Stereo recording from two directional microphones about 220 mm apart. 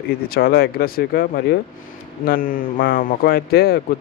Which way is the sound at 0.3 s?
45° left (ahead or behind).